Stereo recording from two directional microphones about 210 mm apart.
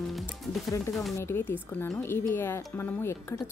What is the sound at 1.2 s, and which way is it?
Speech, 10° left (ahead or behind).